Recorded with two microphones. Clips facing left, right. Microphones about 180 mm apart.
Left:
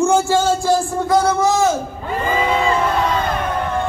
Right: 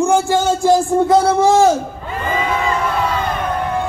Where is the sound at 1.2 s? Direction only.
30° right (ahead or behind).